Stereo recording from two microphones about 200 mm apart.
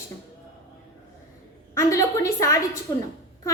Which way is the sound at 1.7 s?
15° left (ahead or behind).